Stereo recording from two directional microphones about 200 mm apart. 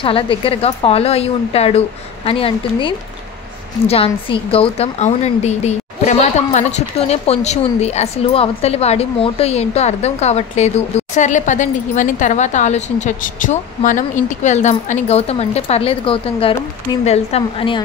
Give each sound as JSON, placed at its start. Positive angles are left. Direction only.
{"t": 0.0, "sound": "a woman's voice", "side_deg": 25}